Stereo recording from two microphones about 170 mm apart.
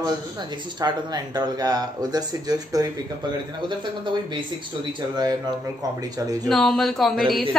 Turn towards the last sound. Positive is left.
turn(degrees=0)  # may be behind; listen again after turning